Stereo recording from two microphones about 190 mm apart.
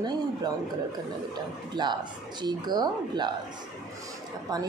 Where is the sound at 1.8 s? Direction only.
25° right (ahead or behind).